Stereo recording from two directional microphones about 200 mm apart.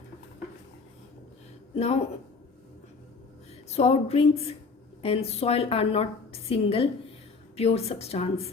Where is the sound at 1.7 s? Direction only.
30° left (ahead or behind).